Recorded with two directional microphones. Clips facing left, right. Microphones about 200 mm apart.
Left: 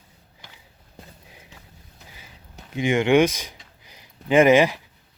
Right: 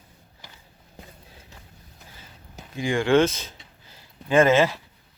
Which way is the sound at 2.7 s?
20° left (ahead or behind).